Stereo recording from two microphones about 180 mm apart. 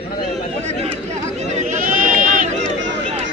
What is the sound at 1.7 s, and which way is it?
Sheep, 50° right (ahead or behind).